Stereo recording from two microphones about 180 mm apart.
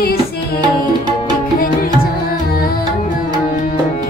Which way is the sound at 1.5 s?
55° left (ahead or behind).